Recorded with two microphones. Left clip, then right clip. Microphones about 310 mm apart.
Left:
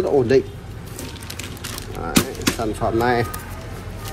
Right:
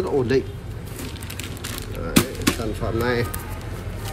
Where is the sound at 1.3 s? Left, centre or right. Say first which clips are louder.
Even; centre.